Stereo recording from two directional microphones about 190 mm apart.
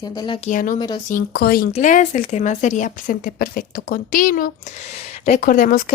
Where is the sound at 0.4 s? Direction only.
45° left (ahead or behind).